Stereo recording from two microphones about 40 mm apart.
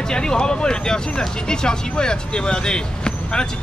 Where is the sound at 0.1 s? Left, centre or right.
Centre.